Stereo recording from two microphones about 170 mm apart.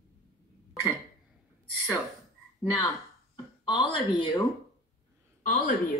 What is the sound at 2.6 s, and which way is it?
Speech, 25° left (ahead or behind).